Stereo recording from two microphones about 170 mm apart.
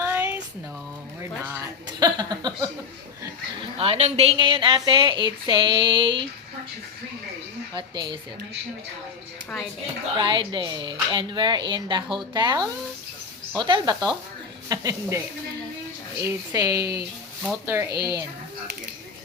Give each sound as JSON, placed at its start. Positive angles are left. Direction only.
{"t": 0.0, "sound": "a sound", "side_deg": -10}
{"t": 1.5, "sound": "speech", "side_deg": -15}
{"t": 3.6, "sound": "a woman's voice", "side_deg": -35}
{"t": 7.7, "sound": "a woman's voice", "side_deg": -25}
{"t": 10.2, "sound": "a woman's voice", "side_deg": -25}